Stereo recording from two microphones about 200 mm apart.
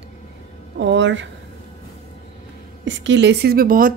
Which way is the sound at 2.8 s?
65° right (ahead or behind).